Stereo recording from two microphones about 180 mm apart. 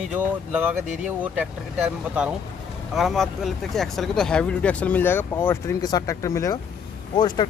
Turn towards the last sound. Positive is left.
turn(degrees=25)  # may be behind; listen again after turning